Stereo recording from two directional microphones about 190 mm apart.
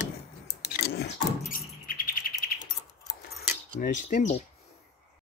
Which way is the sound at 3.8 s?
40° left (ahead or behind).